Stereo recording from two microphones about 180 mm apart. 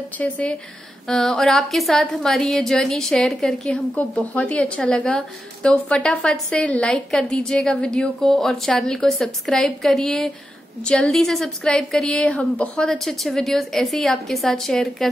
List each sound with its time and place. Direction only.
0.2 s a woman's voice: 5° left (ahead or behind)